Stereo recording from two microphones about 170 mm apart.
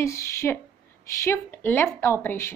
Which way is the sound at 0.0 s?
15° left (ahead or behind).